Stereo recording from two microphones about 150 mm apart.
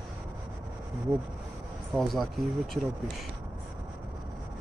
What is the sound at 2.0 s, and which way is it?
Speech, centre (ahead or behind).